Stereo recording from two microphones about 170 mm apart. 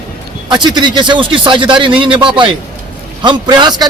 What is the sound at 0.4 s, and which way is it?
A man's voice, 25° right (ahead or behind).